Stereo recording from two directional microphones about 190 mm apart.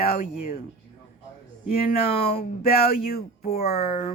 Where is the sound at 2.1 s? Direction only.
30° left (ahead or behind).